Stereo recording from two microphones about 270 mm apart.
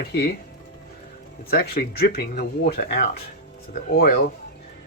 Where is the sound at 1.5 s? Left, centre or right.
Left.